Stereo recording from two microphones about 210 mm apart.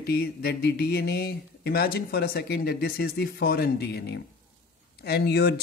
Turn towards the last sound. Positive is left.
turn(degrees=50)  # may be behind; listen again after turning